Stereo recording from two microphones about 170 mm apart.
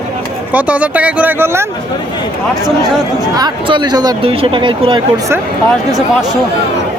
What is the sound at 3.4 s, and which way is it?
Speech, 25° right (ahead or behind).